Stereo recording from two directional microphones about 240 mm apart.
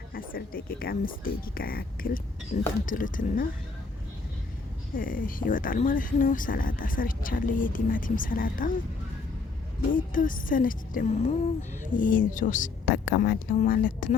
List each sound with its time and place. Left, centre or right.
0.1 s speech: left
4.9 s speech: left
9.9 s speech: left